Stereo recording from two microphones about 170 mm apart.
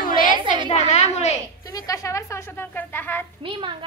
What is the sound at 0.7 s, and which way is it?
Speech, 45° left (ahead or behind).